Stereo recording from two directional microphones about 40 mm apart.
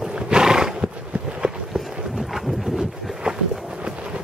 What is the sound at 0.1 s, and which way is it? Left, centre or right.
Wild animals, centre.